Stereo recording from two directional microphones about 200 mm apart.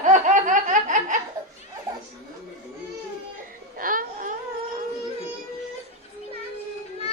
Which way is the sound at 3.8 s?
45° right (ahead or behind).